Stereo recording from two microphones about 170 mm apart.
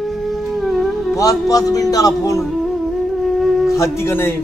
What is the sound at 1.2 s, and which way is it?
Speech, 20° left (ahead or behind).